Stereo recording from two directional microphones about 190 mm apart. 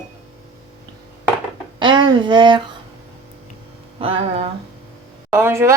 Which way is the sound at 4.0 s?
30° right (ahead or behind).